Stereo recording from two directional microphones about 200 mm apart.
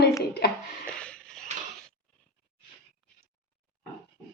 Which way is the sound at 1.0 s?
5° left (ahead or behind).